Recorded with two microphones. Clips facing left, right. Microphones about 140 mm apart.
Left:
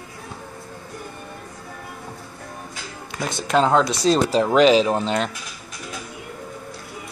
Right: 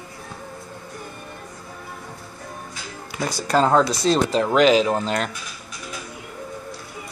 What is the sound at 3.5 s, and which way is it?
Speech, 5° right (ahead or behind).